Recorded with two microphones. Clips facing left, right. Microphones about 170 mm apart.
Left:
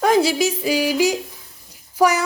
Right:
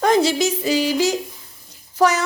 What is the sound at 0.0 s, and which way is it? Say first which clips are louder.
A woman's voice: even; 5° left (ahead or behind).